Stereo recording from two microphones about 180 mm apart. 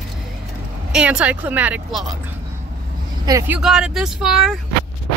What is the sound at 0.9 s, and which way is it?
Speech, 5° right (ahead or behind).